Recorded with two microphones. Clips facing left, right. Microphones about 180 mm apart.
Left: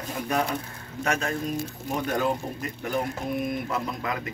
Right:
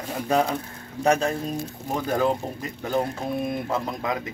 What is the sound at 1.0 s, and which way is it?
Speech, 35° right (ahead or behind).